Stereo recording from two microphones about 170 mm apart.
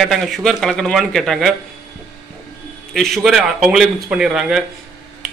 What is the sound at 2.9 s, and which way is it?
Speech, centre (ahead or behind).